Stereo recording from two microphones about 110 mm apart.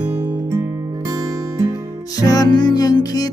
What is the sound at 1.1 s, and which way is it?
Music, 35° right (ahead or behind).